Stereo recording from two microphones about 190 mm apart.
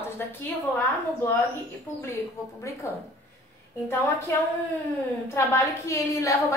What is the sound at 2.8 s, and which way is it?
Speech, 15° left (ahead or behind).